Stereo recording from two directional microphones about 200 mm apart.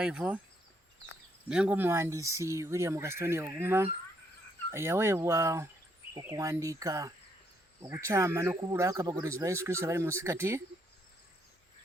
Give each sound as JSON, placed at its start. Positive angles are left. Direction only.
{"t": 0.0, "sound": "speech", "side_deg": -5}
{"t": 1.5, "sound": "speech", "side_deg": -5}